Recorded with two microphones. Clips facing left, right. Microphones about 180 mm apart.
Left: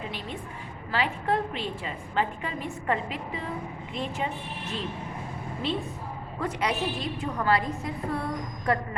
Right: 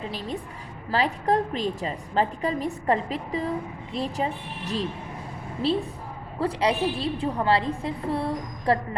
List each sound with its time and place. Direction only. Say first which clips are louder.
0.1 s a woman's voice: right 4 dB; 35° right (ahead or behind)